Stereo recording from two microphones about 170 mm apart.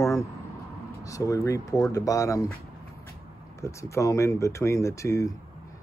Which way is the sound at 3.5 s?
15° left (ahead or behind).